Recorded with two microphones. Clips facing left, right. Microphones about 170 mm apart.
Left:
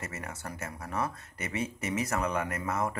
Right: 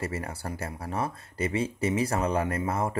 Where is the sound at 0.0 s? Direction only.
30° right (ahead or behind).